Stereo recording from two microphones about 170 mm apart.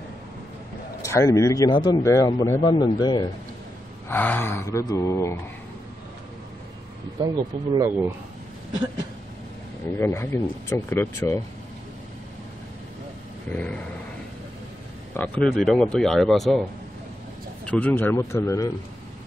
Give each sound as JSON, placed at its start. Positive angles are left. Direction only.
{"t": 1.0, "sound": "speech", "side_deg": 20}
{"t": 4.1, "sound": "speech", "side_deg": 10}
{"t": 7.7, "sound": "speech", "side_deg": -20}
{"t": 9.9, "sound": "speech", "side_deg": 15}
{"t": 13.5, "sound": "speech", "side_deg": 10}
{"t": 15.1, "sound": "speech", "side_deg": 5}
{"t": 17.6, "sound": "speech", "side_deg": 10}